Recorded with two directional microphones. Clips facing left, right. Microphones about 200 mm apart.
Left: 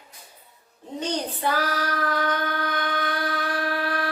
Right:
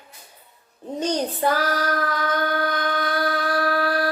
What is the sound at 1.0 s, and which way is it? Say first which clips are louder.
Child singing: right 5 dB; 45° right (ahead or behind).